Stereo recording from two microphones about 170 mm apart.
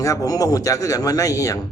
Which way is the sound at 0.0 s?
20° left (ahead or behind).